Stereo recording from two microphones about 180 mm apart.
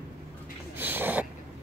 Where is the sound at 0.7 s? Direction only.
10° right (ahead or behind).